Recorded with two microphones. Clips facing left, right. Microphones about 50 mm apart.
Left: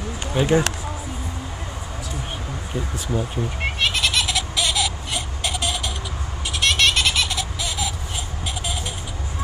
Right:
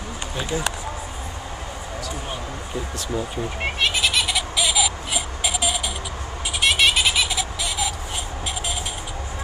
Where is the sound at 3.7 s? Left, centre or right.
Centre.